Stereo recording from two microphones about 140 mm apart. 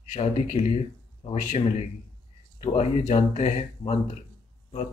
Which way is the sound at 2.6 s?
50° left (ahead or behind).